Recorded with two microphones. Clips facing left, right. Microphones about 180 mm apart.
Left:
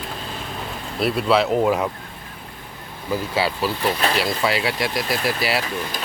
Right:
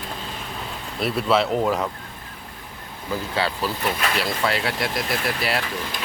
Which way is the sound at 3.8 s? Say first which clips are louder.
Left 4 dB; 30° left (ahead or behind).